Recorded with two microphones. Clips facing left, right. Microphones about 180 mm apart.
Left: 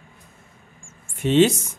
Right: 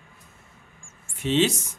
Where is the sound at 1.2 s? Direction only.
50° left (ahead or behind).